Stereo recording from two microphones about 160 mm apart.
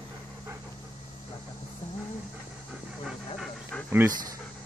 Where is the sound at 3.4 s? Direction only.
5° left (ahead or behind).